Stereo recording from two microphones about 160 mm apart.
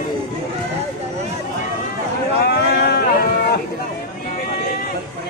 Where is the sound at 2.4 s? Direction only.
85° left.